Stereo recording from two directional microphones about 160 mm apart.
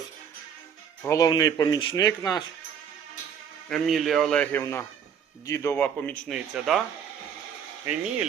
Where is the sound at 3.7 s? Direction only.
Centre (ahead or behind).